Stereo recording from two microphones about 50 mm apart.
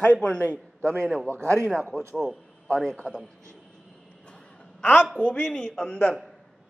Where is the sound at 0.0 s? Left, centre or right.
Left.